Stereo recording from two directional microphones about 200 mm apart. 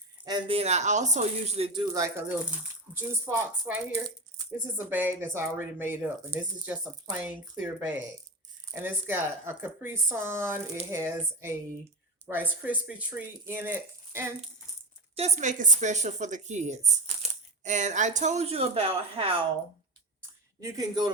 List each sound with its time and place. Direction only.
0.3 s speech: 25° right (ahead or behind)
15.1 s speech: 35° right (ahead or behind)
17.2 s coin: 30° right (ahead or behind)
17.6 s speech: 35° right (ahead or behind)
20.6 s speech: 15° right (ahead or behind)